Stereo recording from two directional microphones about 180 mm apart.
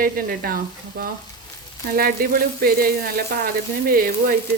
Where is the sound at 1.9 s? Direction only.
55° right (ahead or behind).